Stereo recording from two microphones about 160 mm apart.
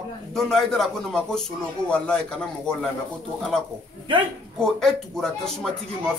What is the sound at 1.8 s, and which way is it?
Speech, 15° right (ahead or behind).